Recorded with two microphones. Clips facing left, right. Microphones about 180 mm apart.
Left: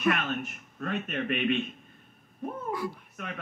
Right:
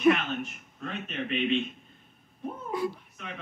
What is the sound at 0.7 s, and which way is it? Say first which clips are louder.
Speech: left 3 dB; 55° left (ahead or behind).